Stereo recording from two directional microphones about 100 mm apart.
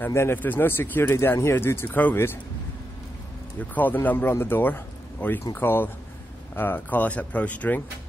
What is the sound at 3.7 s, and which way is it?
A man's voice, 20° left (ahead or behind).